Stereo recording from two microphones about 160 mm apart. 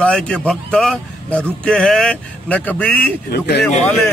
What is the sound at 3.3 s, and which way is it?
Speech, 90° left.